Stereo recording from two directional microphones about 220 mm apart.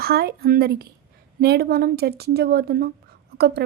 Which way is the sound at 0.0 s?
45° right (ahead or behind).